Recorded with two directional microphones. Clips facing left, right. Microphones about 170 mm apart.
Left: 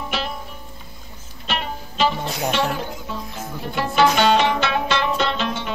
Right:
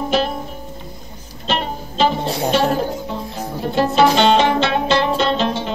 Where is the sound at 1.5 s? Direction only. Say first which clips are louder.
Right 5 dB; 35° right (ahead or behind).